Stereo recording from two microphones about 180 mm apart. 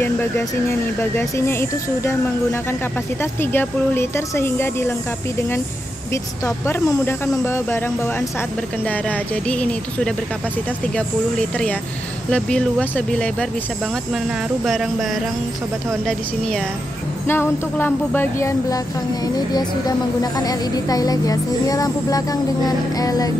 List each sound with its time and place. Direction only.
0.0 s speech: 15° left (ahead or behind)
3.5 s speech: 15° left (ahead or behind)
6.4 s speech: 15° left (ahead or behind)
9.5 s speech: 5° left (ahead or behind)
12.3 s speech: 5° left (ahead or behind)
17.3 s speech: 10° left (ahead or behind)
20.2 s speech: 20° left (ahead or behind)